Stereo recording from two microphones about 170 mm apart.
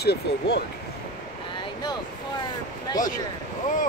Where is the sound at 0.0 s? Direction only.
75° left (ahead or behind).